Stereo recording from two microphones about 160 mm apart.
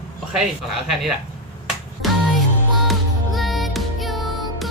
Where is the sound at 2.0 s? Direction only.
Centre (ahead or behind).